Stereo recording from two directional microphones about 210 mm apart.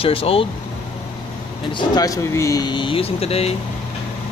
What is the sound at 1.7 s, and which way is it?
Speech, 20° left (ahead or behind).